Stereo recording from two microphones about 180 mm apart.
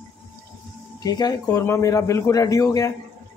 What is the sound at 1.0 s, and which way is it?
Speech, 20° left (ahead or behind).